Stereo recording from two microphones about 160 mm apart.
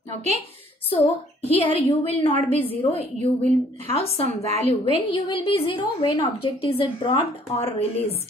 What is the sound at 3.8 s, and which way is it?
A woman's voice, 40° left (ahead or behind).